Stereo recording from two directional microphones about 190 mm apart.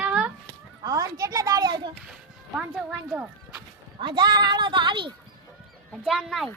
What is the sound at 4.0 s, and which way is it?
A child's voice, 25° right (ahead or behind).